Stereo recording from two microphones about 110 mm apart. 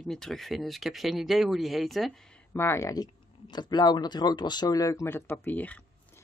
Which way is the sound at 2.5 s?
20° left (ahead or behind).